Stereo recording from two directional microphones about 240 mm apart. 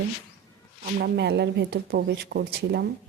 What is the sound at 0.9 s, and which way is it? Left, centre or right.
Speech, right.